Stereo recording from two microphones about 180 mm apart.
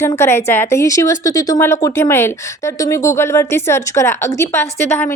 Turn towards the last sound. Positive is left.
turn(degrees=15)  # may be behind; listen again after turning